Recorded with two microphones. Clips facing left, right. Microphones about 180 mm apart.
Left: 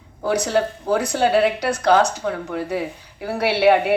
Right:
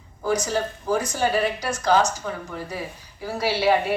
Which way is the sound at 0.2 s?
65° left (ahead or behind).